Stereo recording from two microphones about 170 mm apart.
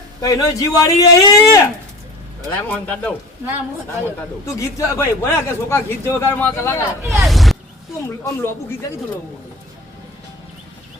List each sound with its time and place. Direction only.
0.2 s speech: 20° left (ahead or behind)
4.5 s speech: 15° left (ahead or behind)
7.3 s speech: centre (ahead or behind)
8.0 s speech: 15° left (ahead or behind)